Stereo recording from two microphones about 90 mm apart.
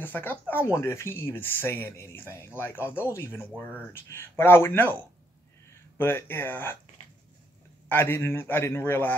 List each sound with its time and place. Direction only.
0.0 s speech: 20° left (ahead or behind)
7.9 s speech: 25° left (ahead or behind)